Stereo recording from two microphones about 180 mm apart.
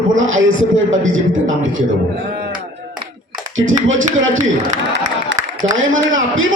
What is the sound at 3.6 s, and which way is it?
Speech, 90° right.